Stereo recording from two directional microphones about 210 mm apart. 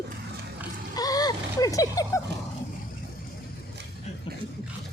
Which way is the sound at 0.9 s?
15° left (ahead or behind).